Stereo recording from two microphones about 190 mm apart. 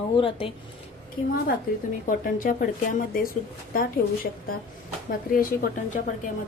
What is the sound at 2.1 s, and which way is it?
A woman's voice, 45° left (ahead or behind).